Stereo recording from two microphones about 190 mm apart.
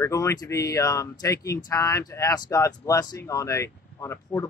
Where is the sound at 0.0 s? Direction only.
15° left (ahead or behind).